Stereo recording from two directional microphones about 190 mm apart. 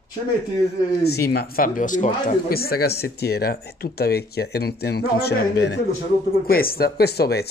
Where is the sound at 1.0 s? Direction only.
55° left (ahead or behind).